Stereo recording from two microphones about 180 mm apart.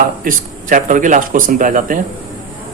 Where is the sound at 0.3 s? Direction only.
45° right (ahead or behind).